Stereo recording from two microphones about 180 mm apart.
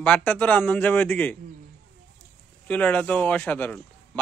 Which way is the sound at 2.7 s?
10° left (ahead or behind).